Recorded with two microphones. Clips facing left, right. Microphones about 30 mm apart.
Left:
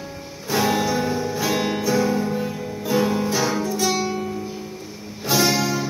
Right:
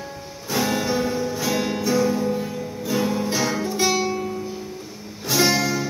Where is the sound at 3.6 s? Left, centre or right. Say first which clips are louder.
Even; right.